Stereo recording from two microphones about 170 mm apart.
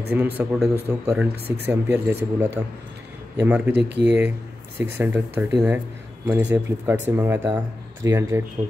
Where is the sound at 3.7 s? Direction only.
90° right.